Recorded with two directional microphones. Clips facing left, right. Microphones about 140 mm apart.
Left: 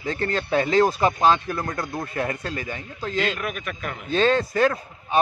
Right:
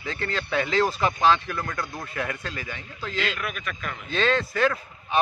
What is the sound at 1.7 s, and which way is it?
Speech, 20° left (ahead or behind).